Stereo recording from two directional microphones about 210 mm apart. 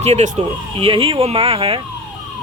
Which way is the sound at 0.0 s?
30° right (ahead or behind).